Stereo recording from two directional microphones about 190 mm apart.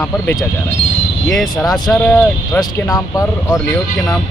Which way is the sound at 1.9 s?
5° left (ahead or behind).